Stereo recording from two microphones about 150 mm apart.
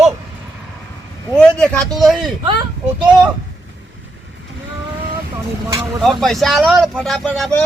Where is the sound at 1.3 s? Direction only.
5° left (ahead or behind).